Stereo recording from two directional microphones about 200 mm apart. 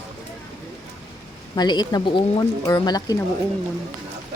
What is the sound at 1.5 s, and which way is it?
A woman's voice, 20° left (ahead or behind).